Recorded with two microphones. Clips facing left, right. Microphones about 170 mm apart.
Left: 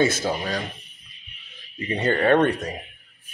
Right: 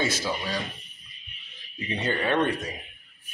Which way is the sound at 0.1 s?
50° left (ahead or behind).